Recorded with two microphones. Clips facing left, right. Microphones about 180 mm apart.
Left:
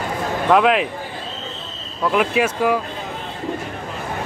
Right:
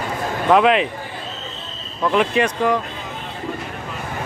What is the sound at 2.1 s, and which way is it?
Speech, 5° left (ahead or behind).